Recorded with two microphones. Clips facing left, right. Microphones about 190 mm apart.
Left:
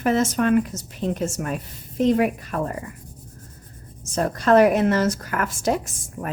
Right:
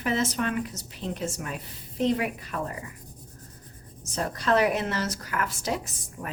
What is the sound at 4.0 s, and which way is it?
Speech, 50° left (ahead or behind).